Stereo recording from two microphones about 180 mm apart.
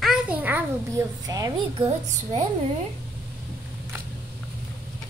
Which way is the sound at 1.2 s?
20° right (ahead or behind).